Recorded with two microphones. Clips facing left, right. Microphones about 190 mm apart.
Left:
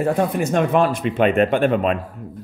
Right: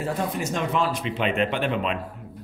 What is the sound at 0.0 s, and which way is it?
A man's voice, 55° left (ahead or behind).